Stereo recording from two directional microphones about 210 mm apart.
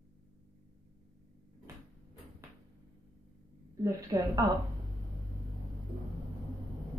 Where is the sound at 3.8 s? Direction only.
15° right (ahead or behind).